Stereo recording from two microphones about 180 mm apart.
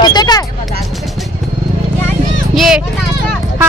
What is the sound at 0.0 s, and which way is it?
Vehicle, 25° left (ahead or behind).